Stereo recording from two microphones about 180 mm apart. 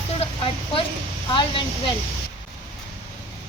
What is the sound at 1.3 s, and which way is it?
Speech, 25° left (ahead or behind).